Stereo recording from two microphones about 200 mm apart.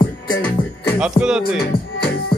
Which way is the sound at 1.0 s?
5° right (ahead or behind).